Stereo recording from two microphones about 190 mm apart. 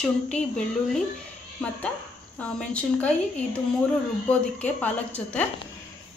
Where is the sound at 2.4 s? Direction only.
5° left (ahead or behind).